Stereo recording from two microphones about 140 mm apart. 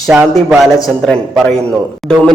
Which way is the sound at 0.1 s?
5° right (ahead or behind).